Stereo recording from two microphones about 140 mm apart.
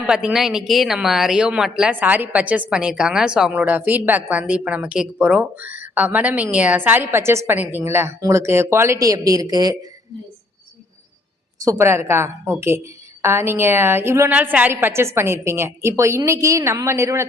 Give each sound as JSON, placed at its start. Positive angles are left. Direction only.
{"t": 0.0, "sound": "a woman's voice", "side_deg": -5}
{"t": 11.6, "sound": "a woman's voice", "side_deg": -20}